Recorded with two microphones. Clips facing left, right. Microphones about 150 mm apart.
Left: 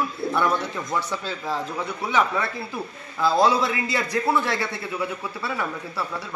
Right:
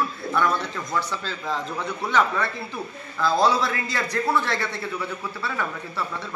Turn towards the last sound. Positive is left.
turn(degrees=10)  # may be behind; listen again after turning